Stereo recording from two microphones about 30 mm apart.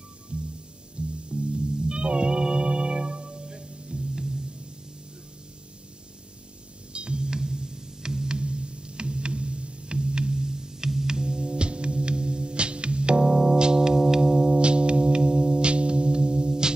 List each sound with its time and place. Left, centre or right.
0.3 s music: right; by 4.3 s centre
6.9 s music: right; by 8.3 s centre
8.3 s music: right
13.2 s keyboard: centre
13.6 s music: right
14.6 s music: right